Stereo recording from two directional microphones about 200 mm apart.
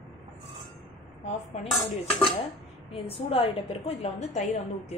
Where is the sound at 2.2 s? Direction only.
30° left (ahead or behind).